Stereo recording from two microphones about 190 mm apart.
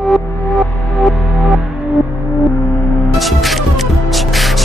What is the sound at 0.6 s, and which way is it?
Music, centre (ahead or behind).